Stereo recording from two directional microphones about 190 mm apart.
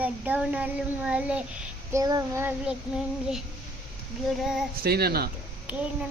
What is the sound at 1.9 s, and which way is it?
Child singing, 20° right (ahead or behind).